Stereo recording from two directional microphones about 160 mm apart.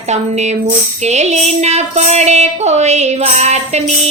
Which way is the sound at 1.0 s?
45° right (ahead or behind).